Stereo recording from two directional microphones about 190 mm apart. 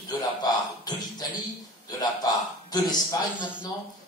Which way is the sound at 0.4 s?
20° left (ahead or behind).